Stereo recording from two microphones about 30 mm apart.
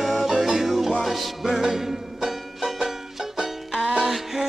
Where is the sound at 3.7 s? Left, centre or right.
Right.